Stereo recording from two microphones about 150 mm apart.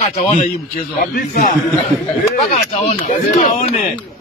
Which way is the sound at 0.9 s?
70° left (ahead or behind).